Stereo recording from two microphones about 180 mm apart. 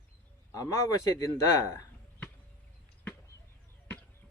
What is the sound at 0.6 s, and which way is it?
Speech, 15° left (ahead or behind).